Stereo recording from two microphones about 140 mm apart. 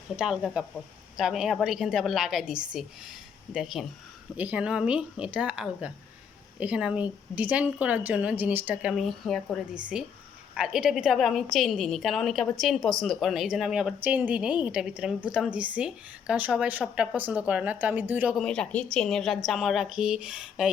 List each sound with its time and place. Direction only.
0.2 s a woman's voice: 5° right (ahead or behind)
18.4 s a woman's voice: 5° left (ahead or behind)